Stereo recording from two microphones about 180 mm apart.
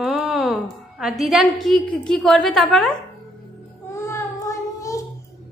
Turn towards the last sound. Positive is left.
turn(degrees=15)  # may be behind; listen again after turning